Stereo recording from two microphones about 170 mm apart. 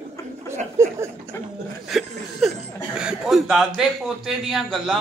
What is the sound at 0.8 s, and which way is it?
Speech, 15° right (ahead or behind).